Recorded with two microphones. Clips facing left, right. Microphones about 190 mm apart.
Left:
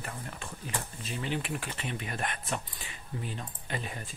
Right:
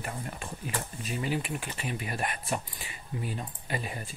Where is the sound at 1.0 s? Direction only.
10° right (ahead or behind).